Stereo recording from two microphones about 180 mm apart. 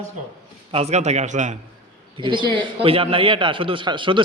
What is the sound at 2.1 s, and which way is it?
A man's voice, 25° right (ahead or behind).